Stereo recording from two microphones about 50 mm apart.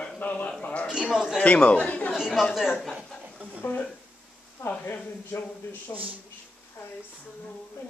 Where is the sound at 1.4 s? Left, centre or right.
Left.